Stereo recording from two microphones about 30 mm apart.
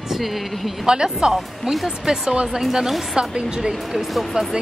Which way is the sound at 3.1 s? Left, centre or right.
Right.